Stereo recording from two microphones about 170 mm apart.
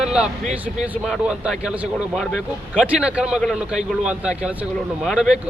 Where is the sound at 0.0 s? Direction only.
5° right (ahead or behind).